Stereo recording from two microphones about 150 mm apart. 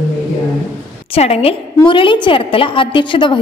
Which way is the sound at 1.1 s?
40° left (ahead or behind).